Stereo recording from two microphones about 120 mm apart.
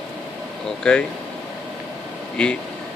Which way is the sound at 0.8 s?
10° left (ahead or behind).